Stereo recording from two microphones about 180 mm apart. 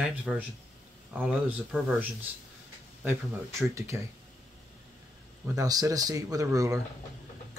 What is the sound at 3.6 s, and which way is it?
Speech, 15° right (ahead or behind).